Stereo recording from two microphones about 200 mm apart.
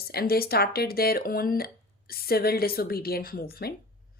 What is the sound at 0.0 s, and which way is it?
A woman's voice, 50° left (ahead or behind).